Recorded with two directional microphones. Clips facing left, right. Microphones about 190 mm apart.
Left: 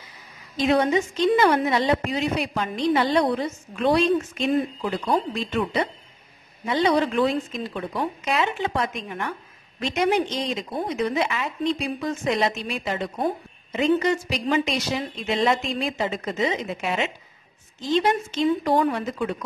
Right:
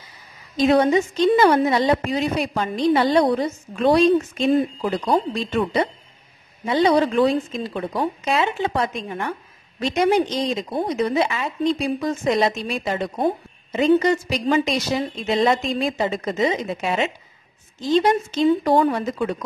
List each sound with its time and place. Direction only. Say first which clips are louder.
0.6 s a woman's voice: right 4 dB; 40° right (ahead or behind)